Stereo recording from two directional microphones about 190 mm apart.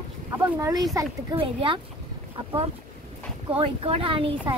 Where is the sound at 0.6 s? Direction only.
20° right (ahead or behind).